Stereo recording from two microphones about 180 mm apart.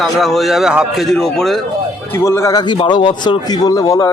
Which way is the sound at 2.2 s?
15° left (ahead or behind).